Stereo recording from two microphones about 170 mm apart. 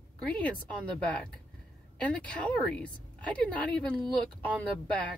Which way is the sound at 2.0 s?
5° left (ahead or behind).